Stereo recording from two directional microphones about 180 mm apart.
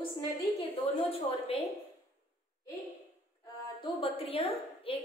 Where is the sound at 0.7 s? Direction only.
35° left (ahead or behind).